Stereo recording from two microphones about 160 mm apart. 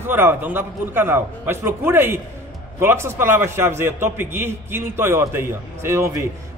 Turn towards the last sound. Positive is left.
turn(degrees=-20)  # may be behind; listen again after turning